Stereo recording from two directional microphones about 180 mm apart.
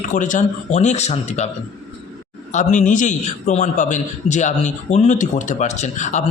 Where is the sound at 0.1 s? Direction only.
45° left (ahead or behind).